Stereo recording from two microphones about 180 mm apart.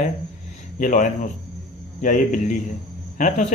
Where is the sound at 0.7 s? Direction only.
45° left (ahead or behind).